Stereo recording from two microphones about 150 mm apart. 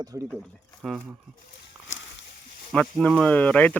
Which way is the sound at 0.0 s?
25° right (ahead or behind).